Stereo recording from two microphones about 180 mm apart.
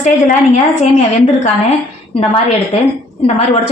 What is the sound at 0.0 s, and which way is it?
Speech, 40° left (ahead or behind).